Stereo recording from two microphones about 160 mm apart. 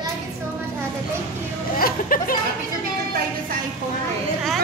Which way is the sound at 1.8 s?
65° left (ahead or behind).